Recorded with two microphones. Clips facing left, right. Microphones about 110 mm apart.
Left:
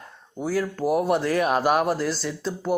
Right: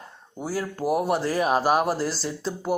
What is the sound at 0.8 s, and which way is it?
Speech, 5° right (ahead or behind).